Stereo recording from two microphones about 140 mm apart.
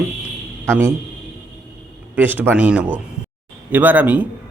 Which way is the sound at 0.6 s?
20° right (ahead or behind).